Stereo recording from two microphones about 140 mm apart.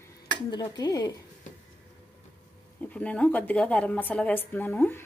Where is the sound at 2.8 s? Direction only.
10° left (ahead or behind).